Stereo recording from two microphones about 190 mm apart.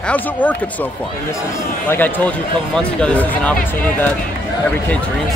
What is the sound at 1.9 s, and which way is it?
Speech, 10° left (ahead or behind).